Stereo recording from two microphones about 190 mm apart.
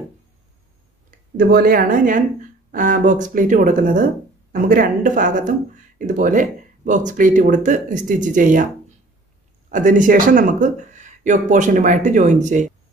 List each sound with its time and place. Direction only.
1.3 s speech: 50° right (ahead or behind)
9.7 s speech: 40° right (ahead or behind)